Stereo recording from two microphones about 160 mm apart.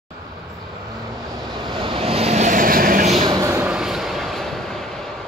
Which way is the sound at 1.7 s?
35° right (ahead or behind).